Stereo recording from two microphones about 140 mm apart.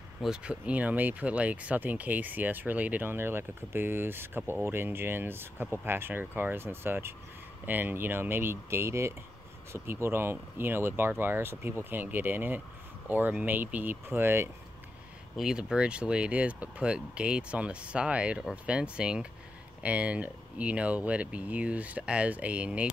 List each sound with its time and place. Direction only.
0.2 s speech: 5° right (ahead or behind)
15.3 s speech: 5° right (ahead or behind)